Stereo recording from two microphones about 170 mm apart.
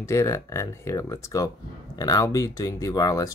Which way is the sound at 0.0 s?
15° left (ahead or behind).